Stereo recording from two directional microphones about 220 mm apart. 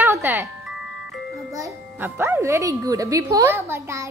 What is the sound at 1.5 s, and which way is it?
A child's voice, 10° right (ahead or behind).